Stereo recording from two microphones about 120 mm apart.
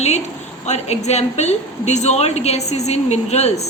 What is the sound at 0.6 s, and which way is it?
A woman's voice, 70° left (ahead or behind).